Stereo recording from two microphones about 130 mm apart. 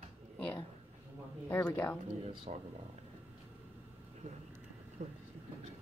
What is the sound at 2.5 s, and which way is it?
Speech, 60° right (ahead or behind).